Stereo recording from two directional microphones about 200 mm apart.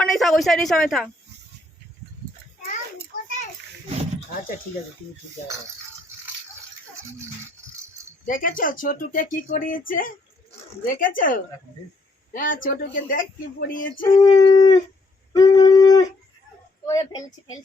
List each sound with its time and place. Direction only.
0.0 s speech: centre (ahead or behind)
8.3 s speech: 45° left (ahead or behind)
14.2 s speech: 20° left (ahead or behind)
15.5 s a sound: 20° left (ahead or behind)
16.8 s a woman's voice: 15° left (ahead or behind)